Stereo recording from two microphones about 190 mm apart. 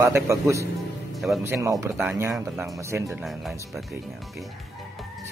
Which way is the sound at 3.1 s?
Centre (ahead or behind).